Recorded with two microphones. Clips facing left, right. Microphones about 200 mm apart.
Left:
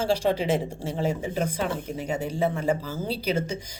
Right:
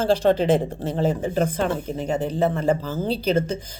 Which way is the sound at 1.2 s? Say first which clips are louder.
Right 5 dB; 50° right (ahead or behind).